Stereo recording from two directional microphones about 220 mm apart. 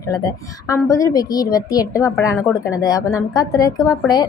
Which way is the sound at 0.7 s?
15° left (ahead or behind).